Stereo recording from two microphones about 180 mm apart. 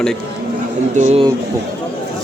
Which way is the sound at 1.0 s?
35° right (ahead or behind).